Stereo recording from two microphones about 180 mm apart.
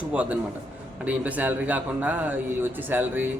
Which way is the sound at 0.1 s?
10° right (ahead or behind).